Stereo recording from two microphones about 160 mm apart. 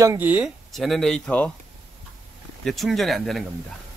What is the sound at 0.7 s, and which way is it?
Speech, centre (ahead or behind).